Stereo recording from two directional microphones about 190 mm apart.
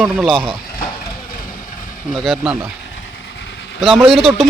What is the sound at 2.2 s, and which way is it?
Speech, centre (ahead or behind).